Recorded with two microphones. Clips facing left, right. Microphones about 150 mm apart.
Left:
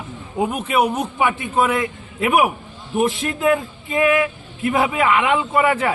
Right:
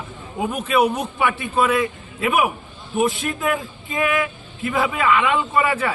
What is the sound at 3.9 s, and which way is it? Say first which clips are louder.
A man's voice: left 4 dB; 20° left (ahead or behind).